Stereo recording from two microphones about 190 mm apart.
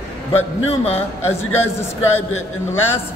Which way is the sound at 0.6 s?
30° left (ahead or behind).